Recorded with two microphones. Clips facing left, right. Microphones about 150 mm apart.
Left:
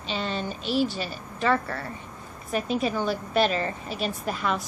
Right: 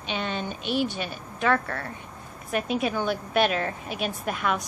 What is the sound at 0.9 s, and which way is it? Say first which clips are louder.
A woman's voice: even; centre (ahead or behind).